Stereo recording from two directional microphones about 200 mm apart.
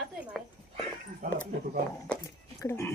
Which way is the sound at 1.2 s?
45° right (ahead or behind).